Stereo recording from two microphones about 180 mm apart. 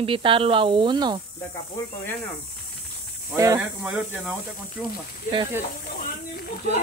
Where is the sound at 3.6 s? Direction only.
5° right (ahead or behind).